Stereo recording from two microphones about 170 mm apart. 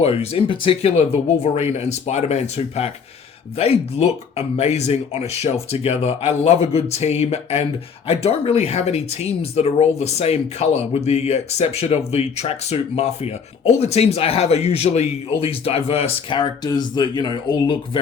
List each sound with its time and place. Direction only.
0.0 s speech: 35° left (ahead or behind)